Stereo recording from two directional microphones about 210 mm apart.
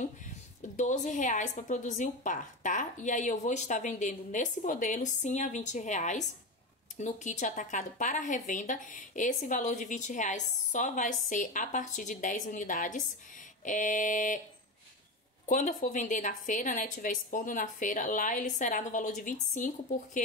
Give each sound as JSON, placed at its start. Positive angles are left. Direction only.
{"t": 0.7, "sound": "a woman's voice", "side_deg": 35}
{"t": 15.4, "sound": "a woman's voice", "side_deg": 35}